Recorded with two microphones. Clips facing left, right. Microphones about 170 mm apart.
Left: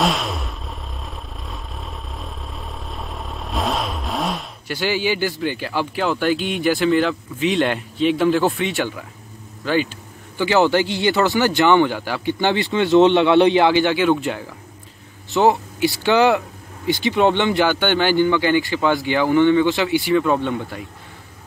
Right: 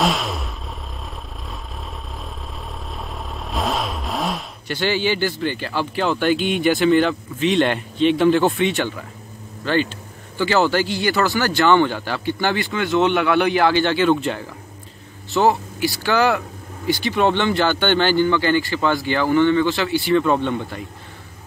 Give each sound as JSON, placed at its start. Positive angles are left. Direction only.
{"t": 0.0, "sound": "vehicle", "side_deg": 0}
{"t": 2.1, "sound": "vehicle", "side_deg": 0}
{"t": 5.4, "sound": "speech", "side_deg": 10}
{"t": 20.2, "sound": "speech", "side_deg": 5}